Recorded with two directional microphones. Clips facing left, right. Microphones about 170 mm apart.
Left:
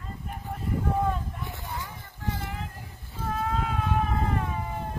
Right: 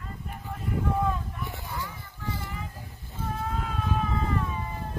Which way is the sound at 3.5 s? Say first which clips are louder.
Left 2 dB; 80° left.